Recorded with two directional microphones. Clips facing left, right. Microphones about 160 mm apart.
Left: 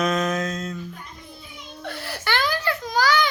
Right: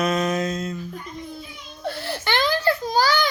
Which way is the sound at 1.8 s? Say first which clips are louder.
Right 4 dB; 25° right (ahead or behind).